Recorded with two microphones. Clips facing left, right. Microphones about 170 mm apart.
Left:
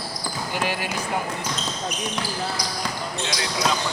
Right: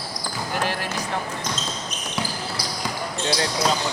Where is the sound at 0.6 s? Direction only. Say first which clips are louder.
Left 1 dB; 5° left (ahead or behind).